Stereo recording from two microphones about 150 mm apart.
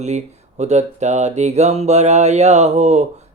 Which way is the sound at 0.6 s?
50° right (ahead or behind).